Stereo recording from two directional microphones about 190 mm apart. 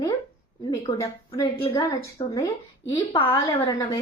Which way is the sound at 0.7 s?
15° left (ahead or behind).